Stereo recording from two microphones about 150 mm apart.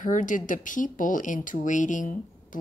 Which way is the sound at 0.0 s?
60° left (ahead or behind).